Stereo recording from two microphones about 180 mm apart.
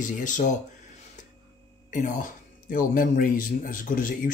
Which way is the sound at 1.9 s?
45° left (ahead or behind).